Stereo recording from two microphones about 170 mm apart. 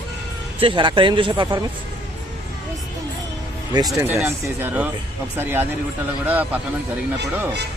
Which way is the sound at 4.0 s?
15° right (ahead or behind).